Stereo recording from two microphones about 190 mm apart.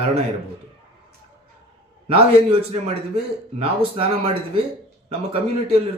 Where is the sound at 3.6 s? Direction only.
30° right (ahead or behind).